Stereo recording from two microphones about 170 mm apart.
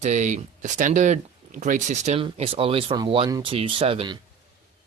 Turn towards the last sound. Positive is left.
turn(degrees=-30)  # may be behind; listen again after turning